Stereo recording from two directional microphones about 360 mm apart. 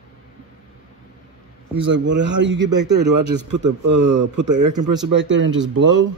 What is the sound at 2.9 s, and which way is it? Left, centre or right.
A man's voice, right.